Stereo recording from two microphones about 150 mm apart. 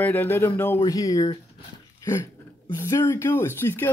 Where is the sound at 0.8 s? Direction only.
25° left (ahead or behind).